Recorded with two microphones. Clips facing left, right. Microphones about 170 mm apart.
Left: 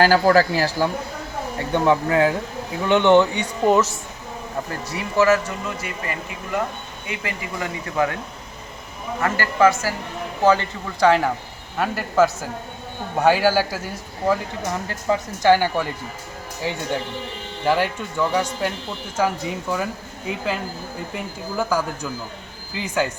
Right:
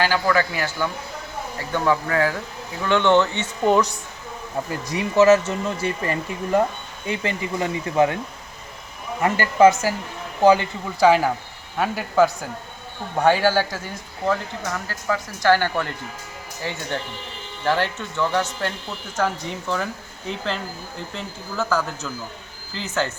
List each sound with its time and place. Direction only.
0.0 s speech: 40° left (ahead or behind); by 3.9 s 5° left (ahead or behind)
4.9 s speech: 20° right (ahead or behind)
9.2 s a man's voice: 20° right (ahead or behind); by 14.7 s 10° left (ahead or behind)
14.7 s speech: 20° left (ahead or behind)